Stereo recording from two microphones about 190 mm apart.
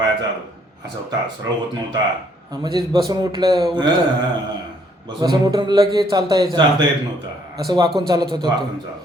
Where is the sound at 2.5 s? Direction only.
20° right (ahead or behind).